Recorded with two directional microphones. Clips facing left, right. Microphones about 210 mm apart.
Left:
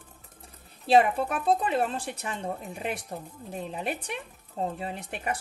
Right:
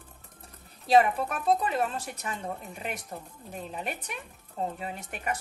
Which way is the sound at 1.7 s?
30° left (ahead or behind).